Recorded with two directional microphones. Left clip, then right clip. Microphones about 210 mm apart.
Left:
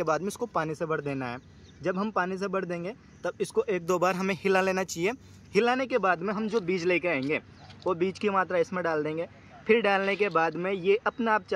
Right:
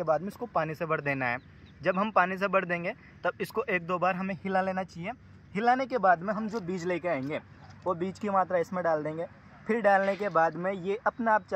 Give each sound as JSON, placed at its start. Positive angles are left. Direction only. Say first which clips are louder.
{"t": 0.1, "sound": "a man's voice", "louder": "even", "side_deg": 5}
{"t": 3.8, "sound": "speech", "louder": "left 3 dB", "side_deg": 10}
{"t": 4.4, "sound": "speech", "louder": "left 4 dB", "side_deg": 25}
{"t": 5.7, "sound": "a man's voice", "louder": "right 6 dB", "side_deg": 15}